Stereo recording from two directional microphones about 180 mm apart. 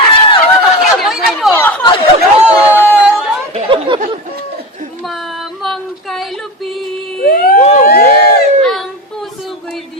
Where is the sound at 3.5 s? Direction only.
35° right (ahead or behind).